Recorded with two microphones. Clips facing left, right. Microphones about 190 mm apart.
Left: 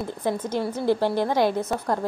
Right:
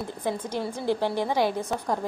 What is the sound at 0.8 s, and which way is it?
Speech, 15° left (ahead or behind).